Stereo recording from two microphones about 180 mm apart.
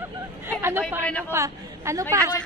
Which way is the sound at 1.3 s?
15° right (ahead or behind).